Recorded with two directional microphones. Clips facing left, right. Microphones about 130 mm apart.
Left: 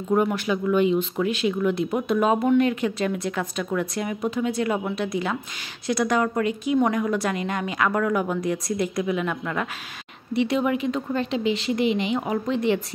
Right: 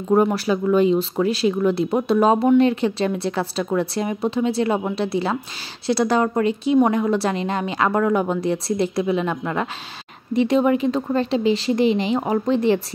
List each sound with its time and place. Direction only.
0.1 s a woman's voice: 35° right (ahead or behind)